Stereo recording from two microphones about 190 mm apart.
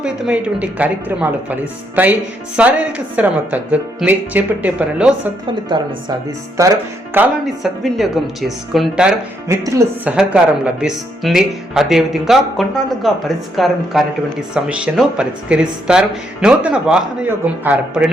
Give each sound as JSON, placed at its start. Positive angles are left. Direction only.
{"t": 0.0, "sound": "speech", "side_deg": -5}
{"t": 5.6, "sound": "a woman's voice", "side_deg": -25}
{"t": 6.6, "sound": "speech", "side_deg": -15}